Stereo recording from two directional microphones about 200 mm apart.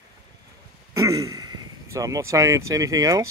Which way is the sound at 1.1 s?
90° right.